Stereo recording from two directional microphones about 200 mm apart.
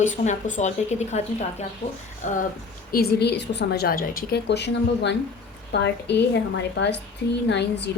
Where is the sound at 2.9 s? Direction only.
50° left (ahead or behind).